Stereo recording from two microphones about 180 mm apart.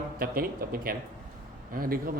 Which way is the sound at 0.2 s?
55° right (ahead or behind).